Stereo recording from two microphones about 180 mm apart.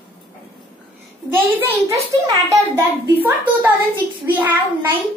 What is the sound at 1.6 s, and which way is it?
A child's voice, 15° right (ahead or behind).